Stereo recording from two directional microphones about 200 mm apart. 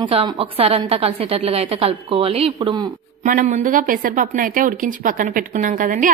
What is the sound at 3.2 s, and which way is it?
A woman's voice, 40° right (ahead or behind).